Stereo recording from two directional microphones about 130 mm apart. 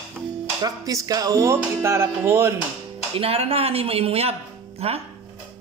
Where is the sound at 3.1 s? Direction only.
50° right (ahead or behind).